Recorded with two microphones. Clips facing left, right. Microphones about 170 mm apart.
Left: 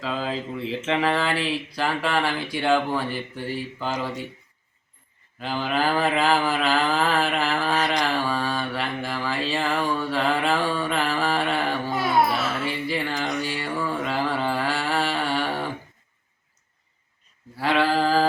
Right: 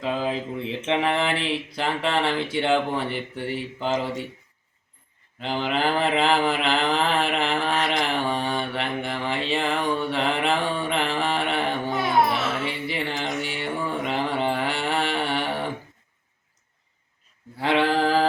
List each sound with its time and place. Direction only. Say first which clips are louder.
0.0 s mantra: right 2 dB; 15° right (ahead or behind)
5.4 s mantra: even; 25° right (ahead or behind)
17.6 s sheep: even; 20° right (ahead or behind)